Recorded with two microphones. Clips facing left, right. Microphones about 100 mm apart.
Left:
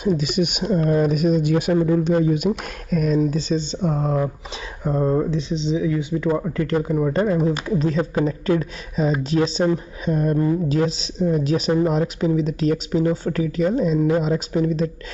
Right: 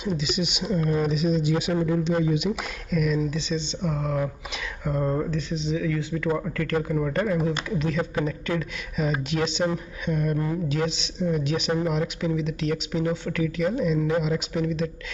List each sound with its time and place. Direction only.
0.2 s a woman's voice: 50° left (ahead or behind); by 4.3 s 35° left (ahead or behind)
4.8 s a woman's voice: 20° left (ahead or behind); by 14.9 s 35° left (ahead or behind)